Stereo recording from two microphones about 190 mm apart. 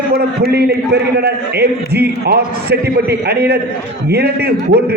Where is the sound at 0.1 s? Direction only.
55° right (ahead or behind).